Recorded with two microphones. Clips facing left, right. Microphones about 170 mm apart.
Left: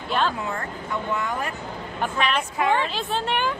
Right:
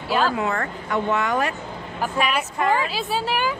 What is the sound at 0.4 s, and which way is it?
Speech, 75° right (ahead or behind).